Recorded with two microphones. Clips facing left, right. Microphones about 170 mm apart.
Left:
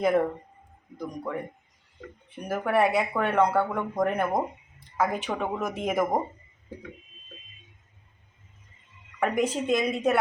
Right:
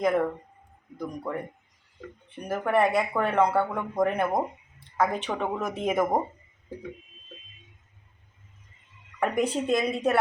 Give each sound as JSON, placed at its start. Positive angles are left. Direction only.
{"t": 0.0, "sound": "speech", "side_deg": 15}
{"t": 0.9, "sound": "speech", "side_deg": 0}
{"t": 2.5, "sound": "speech", "side_deg": 5}
{"t": 9.2, "sound": "speech", "side_deg": 0}